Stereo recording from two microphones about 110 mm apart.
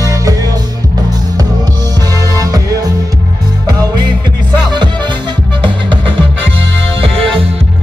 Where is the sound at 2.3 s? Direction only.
30° right (ahead or behind).